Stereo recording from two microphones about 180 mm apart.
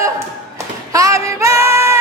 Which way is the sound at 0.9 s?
15° right (ahead or behind).